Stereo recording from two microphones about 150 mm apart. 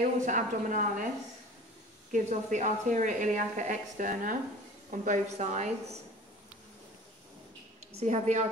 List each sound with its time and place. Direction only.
0.0 s a woman's voice: 60° right (ahead or behind)
2.1 s a woman's voice: 55° right (ahead or behind)
8.0 s a woman's voice: 50° right (ahead or behind)